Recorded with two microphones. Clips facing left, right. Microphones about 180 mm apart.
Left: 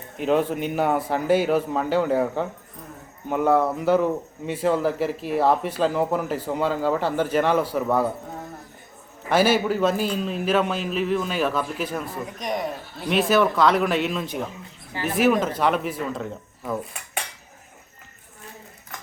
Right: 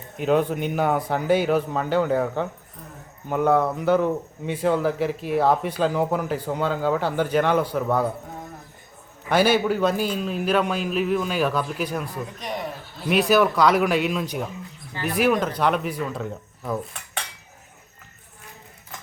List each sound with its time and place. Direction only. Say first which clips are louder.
0.2 s speech: even; centre (ahead or behind)
9.3 s speech: even; centre (ahead or behind)